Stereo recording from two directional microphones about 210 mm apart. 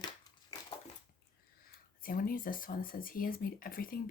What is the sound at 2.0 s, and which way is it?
Speech, 40° left (ahead or behind).